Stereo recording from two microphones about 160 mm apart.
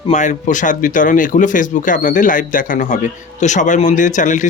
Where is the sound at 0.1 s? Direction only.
50° left (ahead or behind).